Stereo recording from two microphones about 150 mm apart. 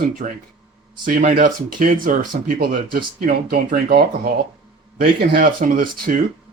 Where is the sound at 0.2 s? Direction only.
60° right (ahead or behind).